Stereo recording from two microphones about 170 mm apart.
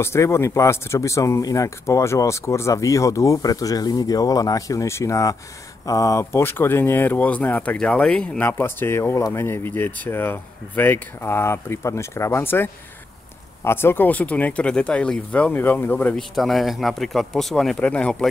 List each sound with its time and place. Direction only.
0.0 s speech: 15° left (ahead or behind)
13.7 s speech: 15° left (ahead or behind)
16.3 s speech: centre (ahead or behind)